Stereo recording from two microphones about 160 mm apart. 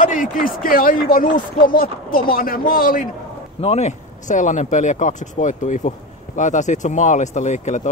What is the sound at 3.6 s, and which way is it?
Speech, 45° left (ahead or behind).